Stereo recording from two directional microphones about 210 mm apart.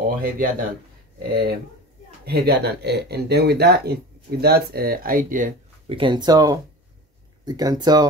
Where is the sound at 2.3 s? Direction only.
50° right (ahead or behind).